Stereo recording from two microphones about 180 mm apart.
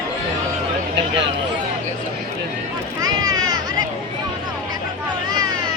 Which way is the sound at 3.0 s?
20° right (ahead or behind).